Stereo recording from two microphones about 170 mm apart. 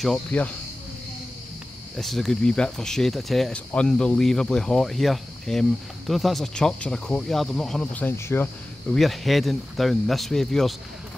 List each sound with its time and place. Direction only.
0.0 s speech: 5° left (ahead or behind)
2.0 s speech: centre (ahead or behind)
8.9 s speech: centre (ahead or behind)